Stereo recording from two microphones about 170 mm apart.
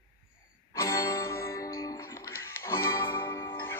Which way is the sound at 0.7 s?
15° left (ahead or behind).